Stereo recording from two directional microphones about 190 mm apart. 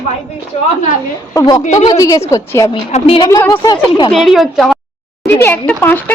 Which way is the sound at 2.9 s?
30° left (ahead or behind).